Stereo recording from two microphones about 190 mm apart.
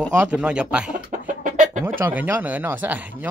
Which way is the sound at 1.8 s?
10° right (ahead or behind).